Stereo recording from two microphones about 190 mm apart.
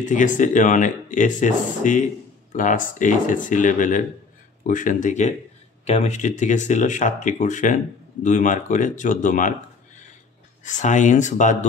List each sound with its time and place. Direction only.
0.0 s speech: 40° left (ahead or behind)
10.6 s speech: 40° left (ahead or behind)